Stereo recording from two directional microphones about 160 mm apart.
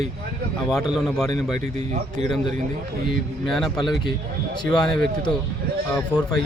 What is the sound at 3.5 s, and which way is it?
Speech, centre (ahead or behind).